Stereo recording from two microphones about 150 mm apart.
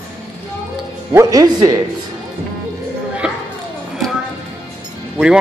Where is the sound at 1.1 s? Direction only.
20° right (ahead or behind).